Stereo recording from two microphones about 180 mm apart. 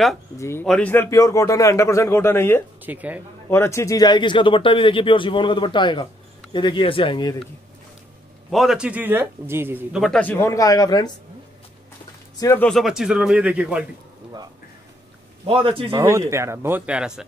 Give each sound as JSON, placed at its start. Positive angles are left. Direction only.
{"t": 0.4, "sound": "speech", "side_deg": 15}
{"t": 1.1, "sound": "speech", "side_deg": 20}
{"t": 2.8, "sound": "speech", "side_deg": -10}
{"t": 3.4, "sound": "speech", "side_deg": 15}
{"t": 8.5, "sound": "speech", "side_deg": 0}
{"t": 10.2, "sound": "speech", "side_deg": 15}
{"t": 12.4, "sound": "speech", "side_deg": 15}
{"t": 12.6, "sound": "speech", "side_deg": 0}
{"t": 15.4, "sound": "a man's voice", "side_deg": -30}
{"t": 15.9, "sound": "speech", "side_deg": -15}